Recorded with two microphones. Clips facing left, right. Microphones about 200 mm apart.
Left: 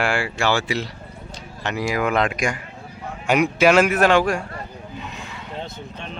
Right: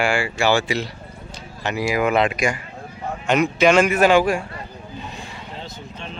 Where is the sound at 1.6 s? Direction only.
5° right (ahead or behind).